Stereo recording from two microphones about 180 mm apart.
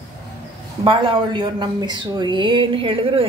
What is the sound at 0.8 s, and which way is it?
Speech, 30° right (ahead or behind).